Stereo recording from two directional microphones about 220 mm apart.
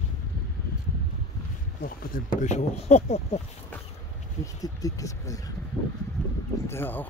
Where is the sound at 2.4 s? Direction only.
30° left (ahead or behind).